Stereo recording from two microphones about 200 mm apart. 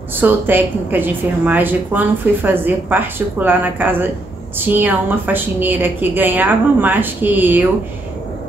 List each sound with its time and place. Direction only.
0.1 s a woman's voice: 10° right (ahead or behind)